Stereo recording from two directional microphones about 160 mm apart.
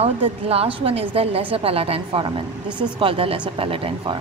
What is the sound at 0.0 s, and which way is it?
Speech, 40° right (ahead or behind).